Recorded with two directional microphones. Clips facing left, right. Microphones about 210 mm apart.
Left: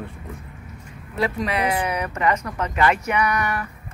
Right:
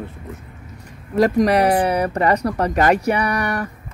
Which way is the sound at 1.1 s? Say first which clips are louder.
Right 9 dB; 40° right (ahead or behind).